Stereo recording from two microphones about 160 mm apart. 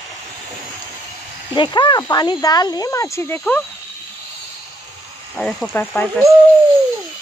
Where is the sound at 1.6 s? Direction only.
30° left (ahead or behind); by 3.6 s 10° left (ahead or behind).